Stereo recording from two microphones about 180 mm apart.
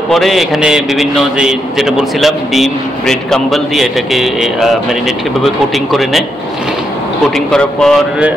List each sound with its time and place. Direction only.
0.1 s a man's voice: centre (ahead or behind)
7.2 s a man's voice: 5° left (ahead or behind)